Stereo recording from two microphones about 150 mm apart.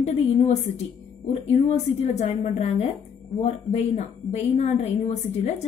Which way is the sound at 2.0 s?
50° left (ahead or behind).